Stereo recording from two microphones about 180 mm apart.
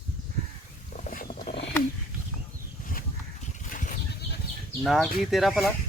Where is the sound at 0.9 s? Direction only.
50° left (ahead or behind).